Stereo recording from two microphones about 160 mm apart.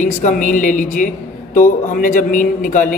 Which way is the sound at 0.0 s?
50° left (ahead or behind).